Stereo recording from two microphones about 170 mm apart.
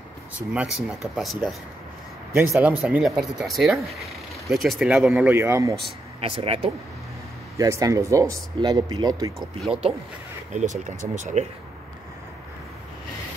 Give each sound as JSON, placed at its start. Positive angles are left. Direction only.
{"t": 0.5, "sound": "speech", "side_deg": -5}
{"t": 2.5, "sound": "speech", "side_deg": -10}
{"t": 6.2, "sound": "speech", "side_deg": -35}
{"t": 7.5, "sound": "speech", "side_deg": -20}
{"t": 9.7, "sound": "speech", "side_deg": -35}